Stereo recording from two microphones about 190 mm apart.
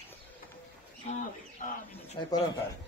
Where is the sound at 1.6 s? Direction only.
45° left (ahead or behind).